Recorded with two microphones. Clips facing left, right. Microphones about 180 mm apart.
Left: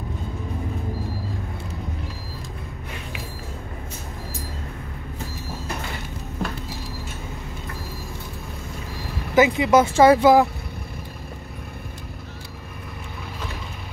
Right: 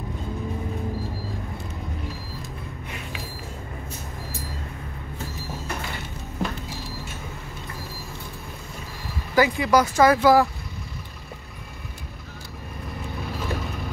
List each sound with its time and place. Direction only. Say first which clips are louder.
9.3 s speech: left 3 dB; 20° left (ahead or behind)